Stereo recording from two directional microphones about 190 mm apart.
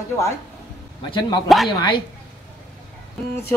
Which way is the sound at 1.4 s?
Centre (ahead or behind).